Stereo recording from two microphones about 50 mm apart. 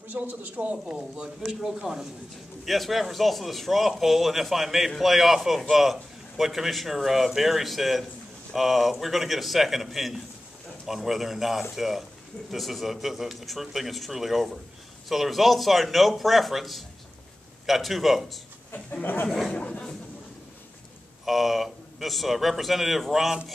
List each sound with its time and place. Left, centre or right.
0.1 s speech: right
0.9 s speech: centre
2.6 s a man's voice: centre
19.5 s speech: centre
21.3 s a man's voice: centre